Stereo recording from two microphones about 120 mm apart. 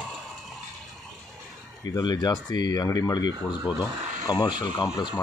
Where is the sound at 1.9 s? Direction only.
35° left (ahead or behind).